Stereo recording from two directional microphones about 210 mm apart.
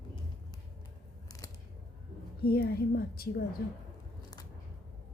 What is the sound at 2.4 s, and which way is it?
A woman's voice, 45° left (ahead or behind).